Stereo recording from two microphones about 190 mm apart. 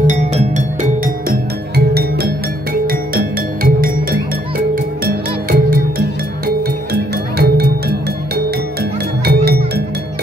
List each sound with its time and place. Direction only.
0.0 s music: 40° right (ahead or behind)
2.0 s music: 55° right (ahead or behind)
9.2 s music: 55° right (ahead or behind)